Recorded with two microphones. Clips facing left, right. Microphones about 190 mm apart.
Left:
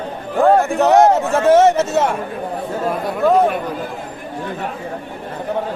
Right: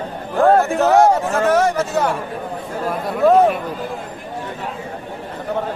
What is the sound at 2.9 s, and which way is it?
Speech, centre (ahead or behind).